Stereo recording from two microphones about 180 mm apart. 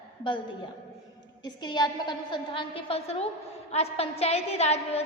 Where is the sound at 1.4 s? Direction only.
25° left (ahead or behind).